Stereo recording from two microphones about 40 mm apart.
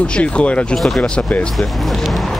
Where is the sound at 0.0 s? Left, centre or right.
Left.